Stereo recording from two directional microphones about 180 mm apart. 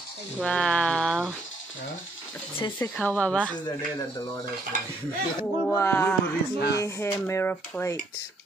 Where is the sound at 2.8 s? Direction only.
5° left (ahead or behind).